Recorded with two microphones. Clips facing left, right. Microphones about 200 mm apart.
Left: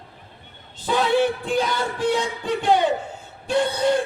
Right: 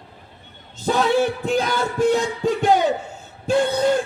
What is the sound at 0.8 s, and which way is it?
Speech, 45° right (ahead or behind).